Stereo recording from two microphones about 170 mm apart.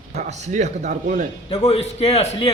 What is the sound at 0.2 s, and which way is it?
Speech, 45° right (ahead or behind).